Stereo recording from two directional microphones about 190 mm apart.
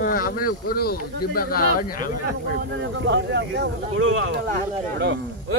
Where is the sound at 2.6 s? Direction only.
70° right (ahead or behind).